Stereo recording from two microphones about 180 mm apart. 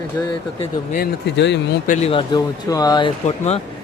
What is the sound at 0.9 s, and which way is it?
Speech, 75° left (ahead or behind).